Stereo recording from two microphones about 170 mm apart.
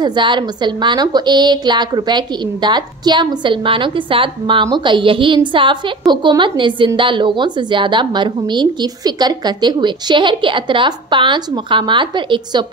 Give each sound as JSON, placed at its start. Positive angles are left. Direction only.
{"t": 0.0, "sound": "a woman's voice", "side_deg": -25}